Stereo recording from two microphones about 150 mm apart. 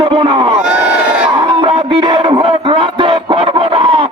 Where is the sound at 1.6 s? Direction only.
40° right (ahead or behind).